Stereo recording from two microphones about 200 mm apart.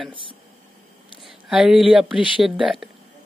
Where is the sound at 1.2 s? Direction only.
5° right (ahead or behind).